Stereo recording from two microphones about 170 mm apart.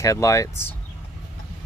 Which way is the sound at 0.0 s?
20° left (ahead or behind).